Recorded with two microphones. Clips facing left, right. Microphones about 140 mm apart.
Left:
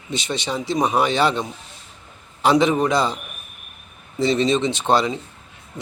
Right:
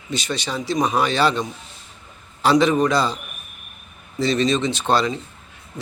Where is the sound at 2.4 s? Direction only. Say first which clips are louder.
Even; 20° left (ahead or behind).